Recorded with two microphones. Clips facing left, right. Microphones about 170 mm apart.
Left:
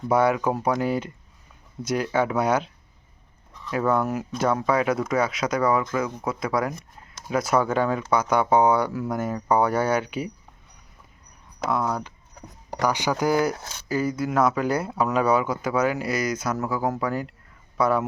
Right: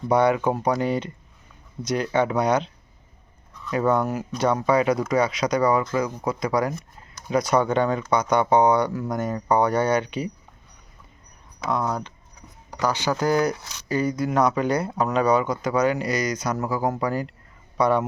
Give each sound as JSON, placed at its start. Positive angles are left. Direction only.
{"t": 0.1, "sound": "speech", "side_deg": 5}
{"t": 3.7, "sound": "speech", "side_deg": 0}
{"t": 11.7, "sound": "speech", "side_deg": 5}